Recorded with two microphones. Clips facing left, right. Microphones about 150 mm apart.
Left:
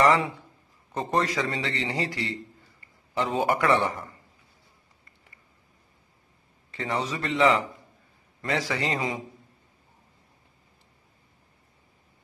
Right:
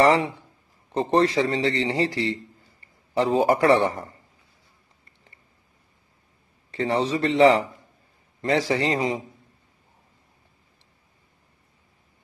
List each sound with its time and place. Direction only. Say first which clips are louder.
0.0 s a sound: right 3 dB; 30° right (ahead or behind)
0.9 s speech: right 6 dB; 30° right (ahead or behind)
6.7 s speech: right 6 dB; 35° right (ahead or behind)